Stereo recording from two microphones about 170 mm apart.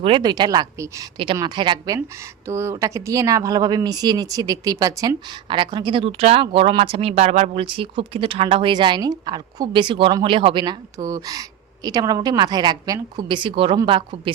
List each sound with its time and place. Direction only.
0.0 s speech: 30° right (ahead or behind)
2.5 s speech: 15° right (ahead or behind); by 14.2 s 30° right (ahead or behind)